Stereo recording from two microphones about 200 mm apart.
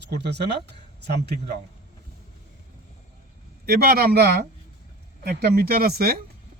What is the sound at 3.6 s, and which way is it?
A man's voice, 50° right (ahead or behind).